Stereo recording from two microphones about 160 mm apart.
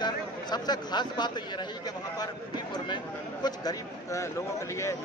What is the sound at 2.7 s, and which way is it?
A man's voice, 25° left (ahead or behind).